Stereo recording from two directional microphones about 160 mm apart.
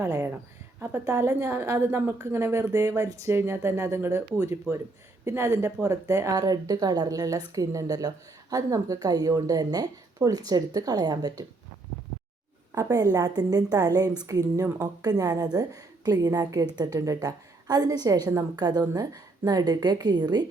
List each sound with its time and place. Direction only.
0.0 s a sound: 15° right (ahead or behind)
0.8 s a woman's voice: 15° right (ahead or behind)
12.7 s speech: 20° right (ahead or behind)